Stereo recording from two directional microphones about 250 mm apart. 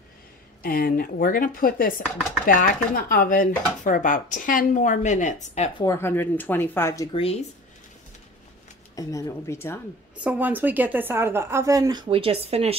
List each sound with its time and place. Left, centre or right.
0.6 s speech: left
5.9 s speech: centre
8.9 s speech: centre
10.1 s a woman's voice: centre; by 12.7 s right